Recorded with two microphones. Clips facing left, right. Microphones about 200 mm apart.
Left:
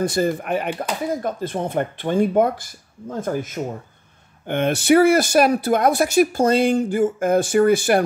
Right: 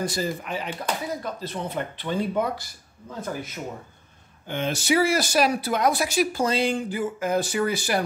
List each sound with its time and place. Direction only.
0.0 s speech: 55° left (ahead or behind)
4.5 s speech: 60° left (ahead or behind)